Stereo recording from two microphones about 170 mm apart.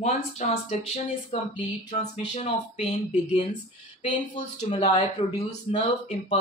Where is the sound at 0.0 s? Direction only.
40° left (ahead or behind).